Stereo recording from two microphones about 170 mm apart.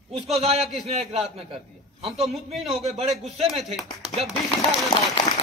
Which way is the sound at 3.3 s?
35° right (ahead or behind).